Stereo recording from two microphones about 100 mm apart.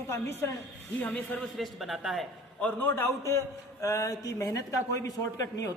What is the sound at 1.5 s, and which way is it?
Speech, centre (ahead or behind).